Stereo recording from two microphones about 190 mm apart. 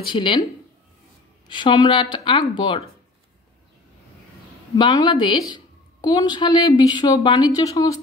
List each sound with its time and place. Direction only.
0.0 s a woman's voice: 25° left (ahead or behind)
1.5 s a woman's voice: 25° left (ahead or behind)
4.7 s a woman's voice: 20° left (ahead or behind)